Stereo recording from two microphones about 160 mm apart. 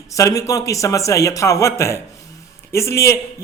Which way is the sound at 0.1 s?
20° left (ahead or behind).